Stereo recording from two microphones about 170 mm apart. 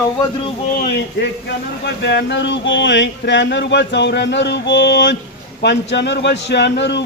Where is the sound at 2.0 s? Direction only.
90° left.